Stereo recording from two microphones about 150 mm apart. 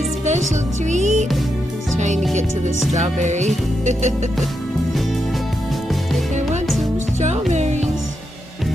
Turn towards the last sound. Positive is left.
turn(degrees=-50)  # may be behind; listen again after turning